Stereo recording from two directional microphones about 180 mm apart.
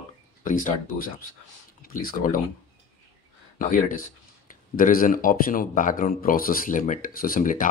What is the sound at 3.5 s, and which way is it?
Speech, 50° left (ahead or behind).